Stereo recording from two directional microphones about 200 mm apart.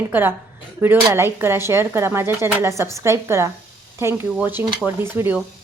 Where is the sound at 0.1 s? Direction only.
10° right (ahead or behind).